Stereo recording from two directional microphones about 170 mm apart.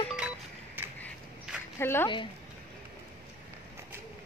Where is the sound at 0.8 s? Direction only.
10° right (ahead or behind).